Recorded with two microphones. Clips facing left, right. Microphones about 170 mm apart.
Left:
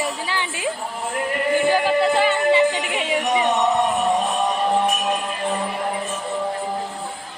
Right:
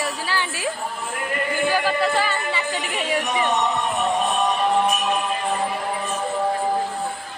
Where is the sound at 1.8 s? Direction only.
20° left (ahead or behind).